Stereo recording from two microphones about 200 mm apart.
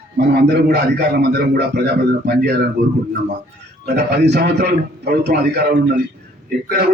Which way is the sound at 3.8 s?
55° right (ahead or behind).